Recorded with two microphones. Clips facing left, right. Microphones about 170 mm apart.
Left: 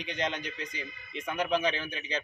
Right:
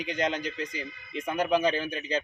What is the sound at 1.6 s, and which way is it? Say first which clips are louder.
Speech: right 4 dB; 40° right (ahead or behind).